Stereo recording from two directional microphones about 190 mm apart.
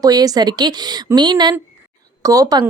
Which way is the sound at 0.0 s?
20° right (ahead or behind).